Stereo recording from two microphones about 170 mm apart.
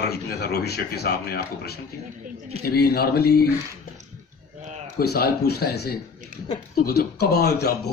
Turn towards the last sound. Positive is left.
turn(degrees=70)  # may be behind; listen again after turning